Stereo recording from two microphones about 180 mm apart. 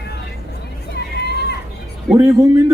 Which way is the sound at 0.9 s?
65° left (ahead or behind).